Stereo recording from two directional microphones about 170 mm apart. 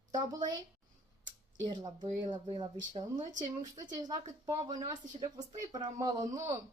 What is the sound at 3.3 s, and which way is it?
Speech, 45° right (ahead or behind).